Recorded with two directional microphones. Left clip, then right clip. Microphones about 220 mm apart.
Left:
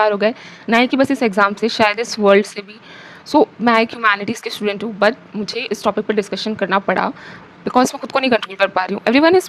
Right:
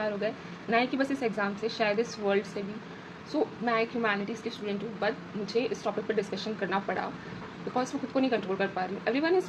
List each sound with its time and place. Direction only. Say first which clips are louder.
0.0 s a woman's voice: left 16 dB; 55° left (ahead or behind)